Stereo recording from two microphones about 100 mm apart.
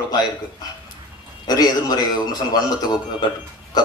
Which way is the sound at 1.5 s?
40° left (ahead or behind).